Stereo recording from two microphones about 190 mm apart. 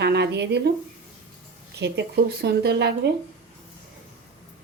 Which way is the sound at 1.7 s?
65° right (ahead or behind).